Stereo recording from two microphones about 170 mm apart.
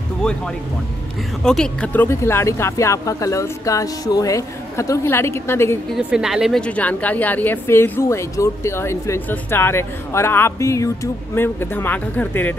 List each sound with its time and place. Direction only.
1.4 s a woman's voice: 5° left (ahead or behind)
5.9 s a woman's voice: 5° right (ahead or behind)